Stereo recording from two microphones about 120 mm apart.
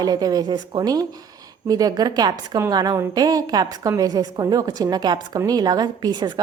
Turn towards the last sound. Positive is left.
turn(degrees=-40)  # may be behind; listen again after turning